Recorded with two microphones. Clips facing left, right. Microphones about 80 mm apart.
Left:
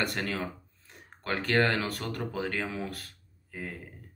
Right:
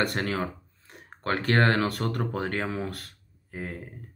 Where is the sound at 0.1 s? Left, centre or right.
Right.